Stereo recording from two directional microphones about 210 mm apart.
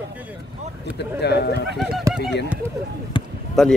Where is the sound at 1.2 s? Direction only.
50° left (ahead or behind).